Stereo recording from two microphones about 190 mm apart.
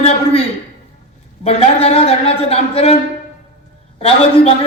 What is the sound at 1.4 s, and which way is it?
A man's voice, 30° left (ahead or behind).